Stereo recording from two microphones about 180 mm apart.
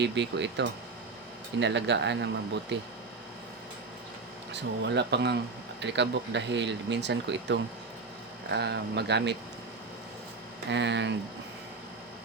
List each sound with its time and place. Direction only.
0.0 s speech: 75° right (ahead or behind)
4.5 s speech: 75° right (ahead or behind)
10.7 s speech: 75° right (ahead or behind)